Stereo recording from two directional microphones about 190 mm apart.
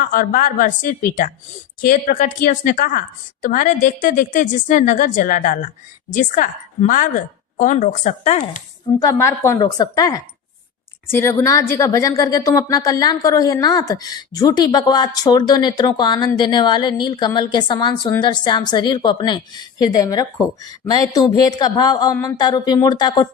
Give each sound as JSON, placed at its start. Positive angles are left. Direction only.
{"t": 0.0, "sound": "a woman's voice", "side_deg": 45}
{"t": 9.0, "sound": "a woman's voice", "side_deg": 15}